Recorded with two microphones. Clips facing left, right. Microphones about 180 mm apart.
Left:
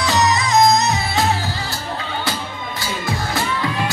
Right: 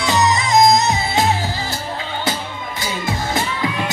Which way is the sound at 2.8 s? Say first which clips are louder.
Right 1 dB; 20° right (ahead or behind).